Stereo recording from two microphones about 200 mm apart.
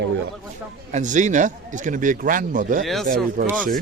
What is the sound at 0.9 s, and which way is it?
Speech, 35° right (ahead or behind).